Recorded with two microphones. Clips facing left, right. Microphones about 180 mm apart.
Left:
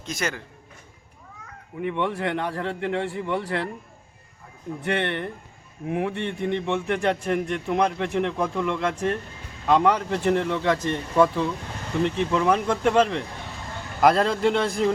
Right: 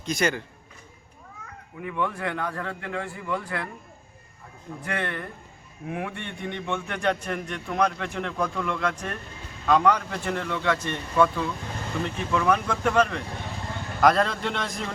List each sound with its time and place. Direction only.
0.0 s a man's voice: centre (ahead or behind)
1.8 s a man's voice: 25° left (ahead or behind)
4.9 s a man's voice: 25° left (ahead or behind)